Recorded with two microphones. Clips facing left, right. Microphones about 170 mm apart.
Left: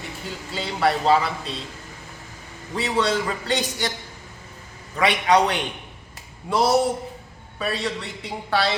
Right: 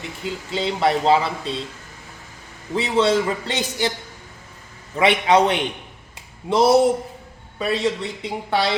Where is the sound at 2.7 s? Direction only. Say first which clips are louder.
Right 4 dB; 25° right (ahead or behind).